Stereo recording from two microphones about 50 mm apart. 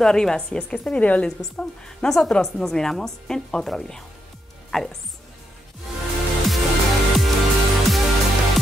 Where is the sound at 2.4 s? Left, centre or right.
Centre.